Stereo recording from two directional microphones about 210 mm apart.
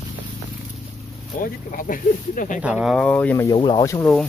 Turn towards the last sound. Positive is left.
turn(degrees=15)  # may be behind; listen again after turning